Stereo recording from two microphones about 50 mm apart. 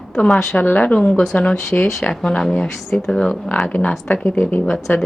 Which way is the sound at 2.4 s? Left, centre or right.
Centre.